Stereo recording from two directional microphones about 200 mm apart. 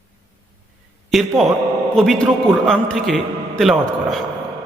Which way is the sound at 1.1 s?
Centre (ahead or behind).